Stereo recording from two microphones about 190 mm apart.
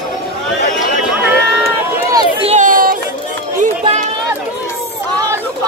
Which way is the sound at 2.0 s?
20° right (ahead or behind).